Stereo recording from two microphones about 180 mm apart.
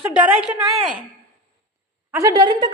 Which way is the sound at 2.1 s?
15° right (ahead or behind).